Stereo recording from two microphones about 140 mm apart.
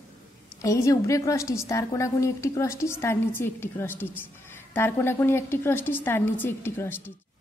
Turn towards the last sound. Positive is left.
turn(degrees=15)  # may be behind; listen again after turning